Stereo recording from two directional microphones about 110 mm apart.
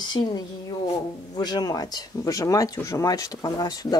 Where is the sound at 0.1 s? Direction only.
40° left (ahead or behind).